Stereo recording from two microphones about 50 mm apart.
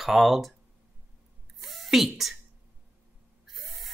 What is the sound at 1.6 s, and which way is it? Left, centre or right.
Speech, centre.